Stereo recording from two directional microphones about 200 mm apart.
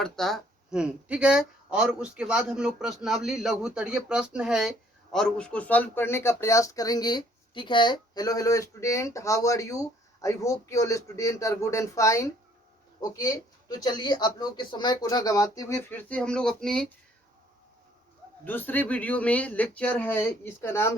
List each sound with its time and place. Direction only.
0.0 s speech: centre (ahead or behind)
18.4 s speech: 10° left (ahead or behind)